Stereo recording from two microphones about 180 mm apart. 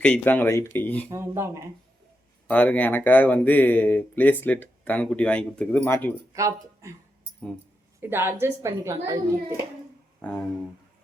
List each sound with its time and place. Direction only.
0.0 s speech: 10° left (ahead or behind)
1.1 s a woman's voice: 15° right (ahead or behind)
2.5 s speech: 10° left (ahead or behind)
6.3 s speech: 15° right (ahead or behind)
8.1 s a woman's voice: 10° right (ahead or behind)
10.2 s speech: 10° left (ahead or behind)